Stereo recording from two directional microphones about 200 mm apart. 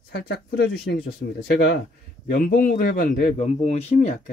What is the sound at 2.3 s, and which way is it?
A man's voice, 45° left (ahead or behind).